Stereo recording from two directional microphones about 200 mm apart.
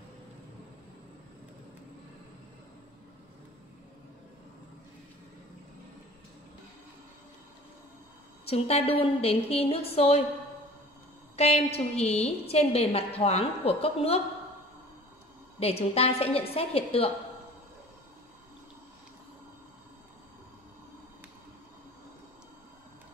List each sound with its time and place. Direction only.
8.5 s a woman's voice: 30° left (ahead or behind)
11.3 s a woman's voice: 30° left (ahead or behind)
15.6 s a woman's voice: 30° left (ahead or behind)